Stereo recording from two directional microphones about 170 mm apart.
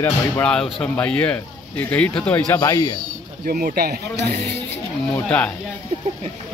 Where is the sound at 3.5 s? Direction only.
55° right (ahead or behind).